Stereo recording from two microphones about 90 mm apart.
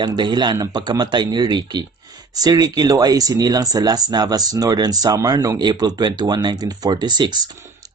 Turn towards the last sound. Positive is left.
turn(degrees=-50)  # may be behind; listen again after turning